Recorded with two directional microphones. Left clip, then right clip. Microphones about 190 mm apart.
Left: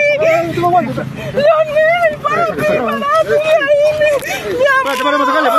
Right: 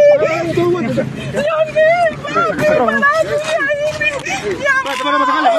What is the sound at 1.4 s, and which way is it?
Speech, 45° left (ahead or behind).